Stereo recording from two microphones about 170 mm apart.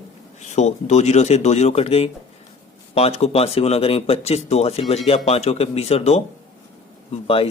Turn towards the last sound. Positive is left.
turn(degrees=35)  # may be behind; listen again after turning